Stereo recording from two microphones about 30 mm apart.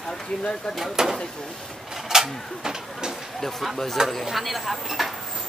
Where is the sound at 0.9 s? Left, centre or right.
Centre.